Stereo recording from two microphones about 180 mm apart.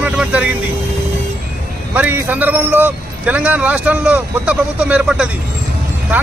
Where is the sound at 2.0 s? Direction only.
10° right (ahead or behind).